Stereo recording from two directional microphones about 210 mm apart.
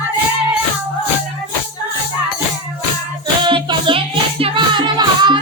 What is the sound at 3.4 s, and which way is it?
Music, 25° right (ahead or behind).